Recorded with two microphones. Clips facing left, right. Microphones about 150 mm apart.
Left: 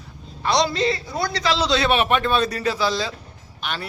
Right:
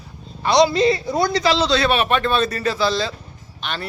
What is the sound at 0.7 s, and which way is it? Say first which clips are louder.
Speech: right 6 dB; 15° right (ahead or behind).